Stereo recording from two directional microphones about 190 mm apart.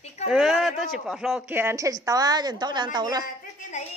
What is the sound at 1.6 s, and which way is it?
A woman's voice, 15° right (ahead or behind).